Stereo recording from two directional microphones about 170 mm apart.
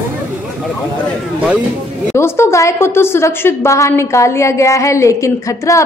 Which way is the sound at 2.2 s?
15° left (ahead or behind).